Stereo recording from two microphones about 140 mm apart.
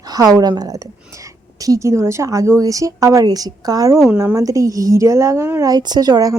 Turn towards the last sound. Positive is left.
turn(degrees=-25)  # may be behind; listen again after turning